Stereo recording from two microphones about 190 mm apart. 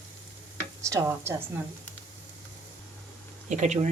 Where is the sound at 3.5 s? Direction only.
40° right (ahead or behind).